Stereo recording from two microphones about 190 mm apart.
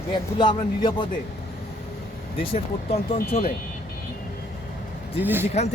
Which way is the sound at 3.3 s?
50° left (ahead or behind).